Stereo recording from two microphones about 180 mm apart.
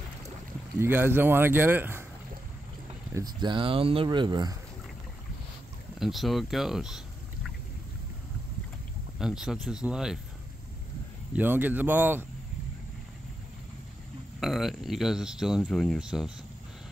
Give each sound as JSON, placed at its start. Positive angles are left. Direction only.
{"t": 0.7, "sound": "a man's voice", "side_deg": -10}
{"t": 3.1, "sound": "speech", "side_deg": -20}
{"t": 5.9, "sound": "speech", "side_deg": 0}
{"t": 9.2, "sound": "speech", "side_deg": -5}
{"t": 11.3, "sound": "a man's voice", "side_deg": -10}
{"t": 14.4, "sound": "speech", "side_deg": 0}